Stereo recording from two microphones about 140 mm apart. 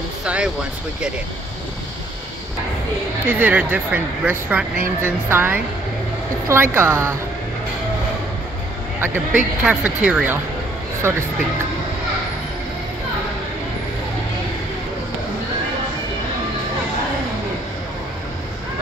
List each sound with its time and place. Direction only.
0.2 s speech: 5° right (ahead or behind)
3.3 s speech: 15° right (ahead or behind)
9.0 s speech: 10° right (ahead or behind)